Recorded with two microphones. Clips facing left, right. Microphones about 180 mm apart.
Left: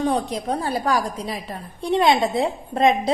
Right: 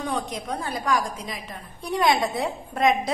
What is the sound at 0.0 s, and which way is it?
A woman's voice, 35° left (ahead or behind).